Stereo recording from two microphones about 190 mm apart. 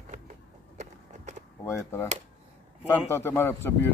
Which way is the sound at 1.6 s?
15° left (ahead or behind).